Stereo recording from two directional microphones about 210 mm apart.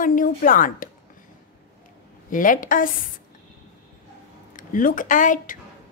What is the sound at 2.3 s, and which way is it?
Speech, 40° left (ahead or behind).